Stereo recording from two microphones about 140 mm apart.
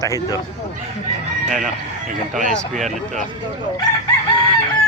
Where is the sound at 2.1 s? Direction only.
70° right (ahead or behind).